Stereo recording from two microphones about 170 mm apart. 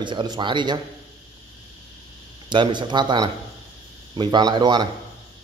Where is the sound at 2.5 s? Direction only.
25° right (ahead or behind).